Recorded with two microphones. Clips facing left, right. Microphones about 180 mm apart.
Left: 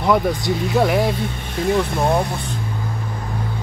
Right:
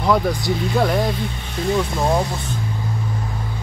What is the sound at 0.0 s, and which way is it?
Speech, centre (ahead or behind).